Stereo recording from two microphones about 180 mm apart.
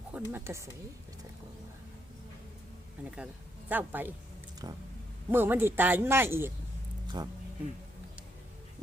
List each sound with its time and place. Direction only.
0.1 s speech: 10° right (ahead or behind)
3.7 s speech: 10° right (ahead or behind)
4.6 s speech: 20° right (ahead or behind)
7.2 s speech: 25° right (ahead or behind)